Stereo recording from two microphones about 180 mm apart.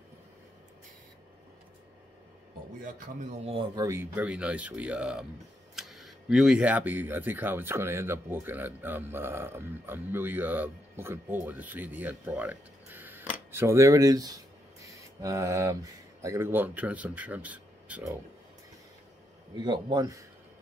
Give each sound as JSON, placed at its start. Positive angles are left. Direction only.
{"t": 2.8, "sound": "speech", "side_deg": -40}
{"t": 3.8, "sound": "speech", "side_deg": -15}
{"t": 19.5, "sound": "a man's voice", "side_deg": -25}